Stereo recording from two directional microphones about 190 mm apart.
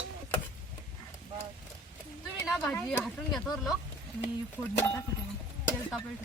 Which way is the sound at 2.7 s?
10° left (ahead or behind).